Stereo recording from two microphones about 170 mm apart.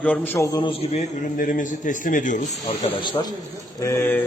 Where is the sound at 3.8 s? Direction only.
15° left (ahead or behind).